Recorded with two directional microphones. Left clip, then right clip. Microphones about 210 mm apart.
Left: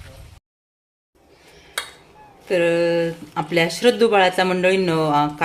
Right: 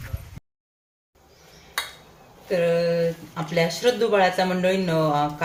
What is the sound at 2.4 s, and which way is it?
Speech, 50° left (ahead or behind).